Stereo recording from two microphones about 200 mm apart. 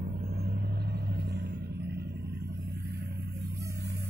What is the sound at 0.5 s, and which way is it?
Vehicle, 55° right (ahead or behind).